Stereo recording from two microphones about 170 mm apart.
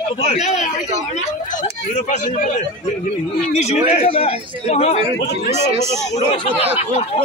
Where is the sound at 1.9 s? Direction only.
45° left (ahead or behind).